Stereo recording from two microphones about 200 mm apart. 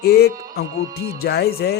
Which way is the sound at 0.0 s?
50° left (ahead or behind).